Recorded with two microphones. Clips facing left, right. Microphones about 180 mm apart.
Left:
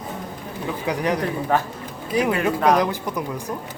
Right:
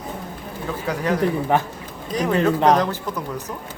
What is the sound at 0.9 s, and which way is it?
Speech, 15° left (ahead or behind).